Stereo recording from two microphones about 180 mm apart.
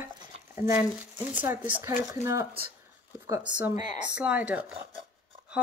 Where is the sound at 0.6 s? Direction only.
15° right (ahead or behind).